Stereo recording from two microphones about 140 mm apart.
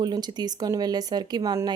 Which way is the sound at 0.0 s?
30° right (ahead or behind).